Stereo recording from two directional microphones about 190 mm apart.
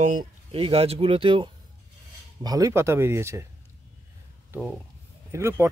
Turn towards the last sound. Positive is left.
turn(degrees=-15)  # may be behind; listen again after turning